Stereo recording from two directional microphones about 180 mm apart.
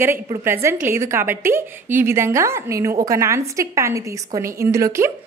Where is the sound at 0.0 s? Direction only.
15° right (ahead or behind).